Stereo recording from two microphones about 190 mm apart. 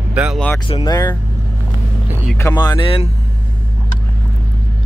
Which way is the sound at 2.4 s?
15° left (ahead or behind).